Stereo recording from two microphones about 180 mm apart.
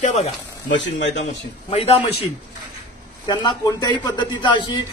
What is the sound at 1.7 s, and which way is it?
Speech, 35° left (ahead or behind).